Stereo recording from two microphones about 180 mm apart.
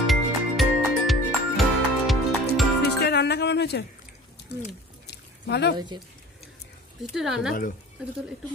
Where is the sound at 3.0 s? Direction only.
65° left (ahead or behind).